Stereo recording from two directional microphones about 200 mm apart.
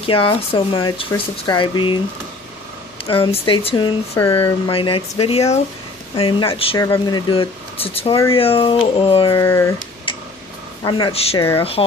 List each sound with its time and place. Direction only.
0.0 s speech: 25° left (ahead or behind)
3.1 s speech: 30° left (ahead or behind)
9.4 s speech: 15° left (ahead or behind)
10.8 s speech: 20° left (ahead or behind)